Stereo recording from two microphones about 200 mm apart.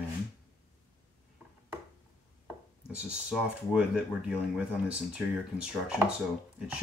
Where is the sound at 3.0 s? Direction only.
5° right (ahead or behind).